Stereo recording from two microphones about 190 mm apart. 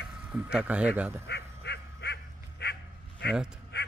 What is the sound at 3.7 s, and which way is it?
Quack, 60° left (ahead or behind).